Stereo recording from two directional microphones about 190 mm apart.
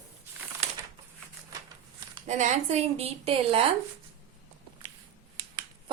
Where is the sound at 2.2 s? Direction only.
40° right (ahead or behind).